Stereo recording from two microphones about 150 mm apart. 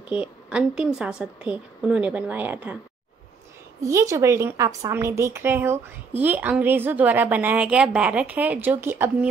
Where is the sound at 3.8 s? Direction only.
20° right (ahead or behind).